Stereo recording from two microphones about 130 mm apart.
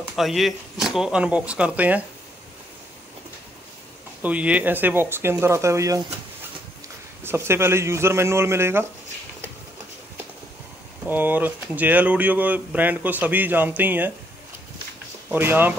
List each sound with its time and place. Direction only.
0.1 s speech: centre (ahead or behind)
4.2 s speech: 10° right (ahead or behind)
7.2 s speech: 20° right (ahead or behind)
11.1 s speech: 15° right (ahead or behind)
15.3 s speech: 15° right (ahead or behind)